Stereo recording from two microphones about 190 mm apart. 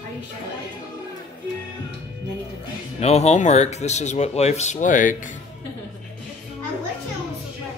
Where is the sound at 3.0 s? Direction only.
35° left (ahead or behind).